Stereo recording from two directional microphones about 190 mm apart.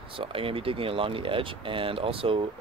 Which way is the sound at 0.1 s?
30° right (ahead or behind).